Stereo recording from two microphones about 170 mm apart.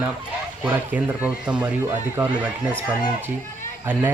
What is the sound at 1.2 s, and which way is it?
Speech, 10° right (ahead or behind).